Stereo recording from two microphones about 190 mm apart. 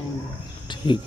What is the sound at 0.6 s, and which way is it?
Speech, 25° left (ahead or behind).